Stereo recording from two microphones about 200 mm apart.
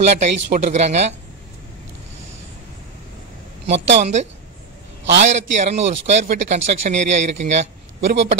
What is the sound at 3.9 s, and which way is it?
Speech, 35° right (ahead or behind).